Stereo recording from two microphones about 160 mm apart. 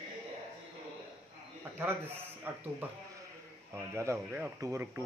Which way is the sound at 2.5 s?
10° right (ahead or behind).